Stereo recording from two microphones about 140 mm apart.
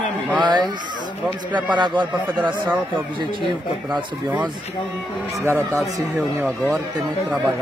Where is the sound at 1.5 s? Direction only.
35° right (ahead or behind).